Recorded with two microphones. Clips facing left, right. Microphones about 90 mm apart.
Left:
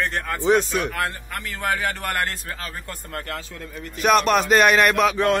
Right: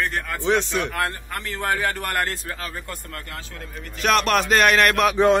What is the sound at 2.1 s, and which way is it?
Speech, 20° right (ahead or behind).